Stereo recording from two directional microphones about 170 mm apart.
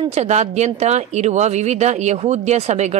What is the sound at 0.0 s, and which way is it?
A woman's voice, 40° right (ahead or behind).